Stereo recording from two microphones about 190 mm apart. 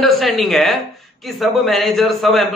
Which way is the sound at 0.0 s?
Centre (ahead or behind).